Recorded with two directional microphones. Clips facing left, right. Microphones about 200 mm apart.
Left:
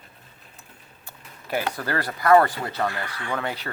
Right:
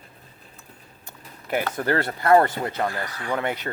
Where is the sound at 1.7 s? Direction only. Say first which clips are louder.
Right 4 dB; 25° right (ahead or behind).